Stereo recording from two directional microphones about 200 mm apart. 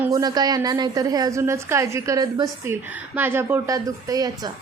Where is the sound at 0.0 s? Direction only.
20° right (ahead or behind).